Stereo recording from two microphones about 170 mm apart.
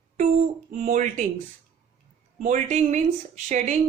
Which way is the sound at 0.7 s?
45° right (ahead or behind).